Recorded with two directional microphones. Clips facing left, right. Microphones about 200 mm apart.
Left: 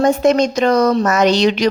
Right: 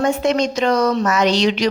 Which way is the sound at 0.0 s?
40° left (ahead or behind).